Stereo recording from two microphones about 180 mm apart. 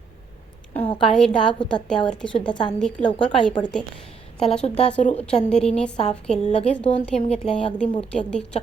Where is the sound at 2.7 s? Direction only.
5° left (ahead or behind).